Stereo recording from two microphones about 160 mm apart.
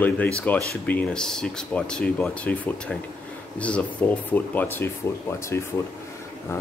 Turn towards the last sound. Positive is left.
turn(degrees=15)  # may be behind; listen again after turning